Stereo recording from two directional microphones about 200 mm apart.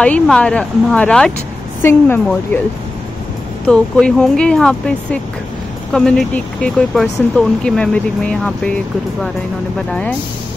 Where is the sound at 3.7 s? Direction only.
5° left (ahead or behind).